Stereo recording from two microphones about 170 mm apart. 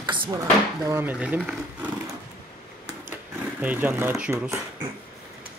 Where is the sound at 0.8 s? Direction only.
15° right (ahead or behind).